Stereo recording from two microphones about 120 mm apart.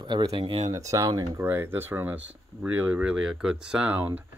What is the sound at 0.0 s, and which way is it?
Speech, 40° right (ahead or behind).